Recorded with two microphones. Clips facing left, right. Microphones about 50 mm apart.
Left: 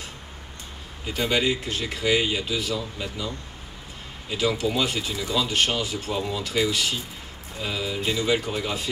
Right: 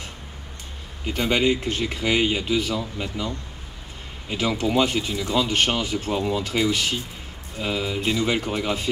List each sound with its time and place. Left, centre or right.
1.1 s speech: right
4.3 s speech: right